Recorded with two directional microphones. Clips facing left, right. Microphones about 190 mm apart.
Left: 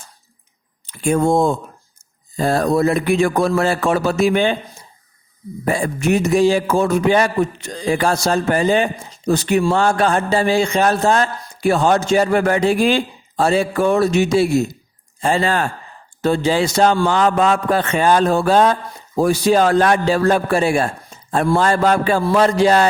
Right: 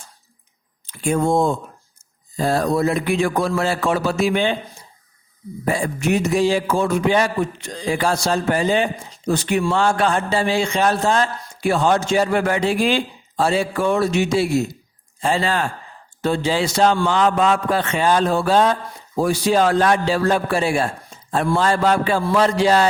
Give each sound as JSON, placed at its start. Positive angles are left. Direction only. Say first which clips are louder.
{"t": 0.9, "sound": "a man's voice", "louder": "left 3 dB", "side_deg": 50}
{"t": 5.6, "sound": "a man's voice", "louder": "left 2 dB", "side_deg": 45}